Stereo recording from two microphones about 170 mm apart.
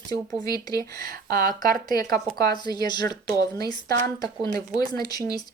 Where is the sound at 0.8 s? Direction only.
60° right (ahead or behind).